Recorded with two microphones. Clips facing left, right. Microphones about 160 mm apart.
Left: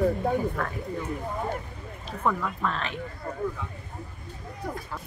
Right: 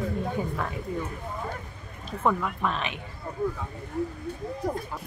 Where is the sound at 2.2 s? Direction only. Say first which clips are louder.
Right 1 dB; 15° right (ahead or behind).